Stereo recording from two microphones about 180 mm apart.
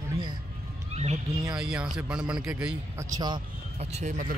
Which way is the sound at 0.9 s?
35° right (ahead or behind).